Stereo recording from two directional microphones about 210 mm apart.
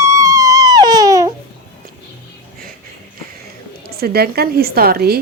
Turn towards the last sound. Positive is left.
turn(degrees=-45)  # may be behind; listen again after turning